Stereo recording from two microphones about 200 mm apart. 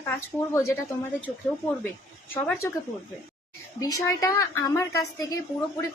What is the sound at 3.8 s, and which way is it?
A woman's voice, 20° left (ahead or behind).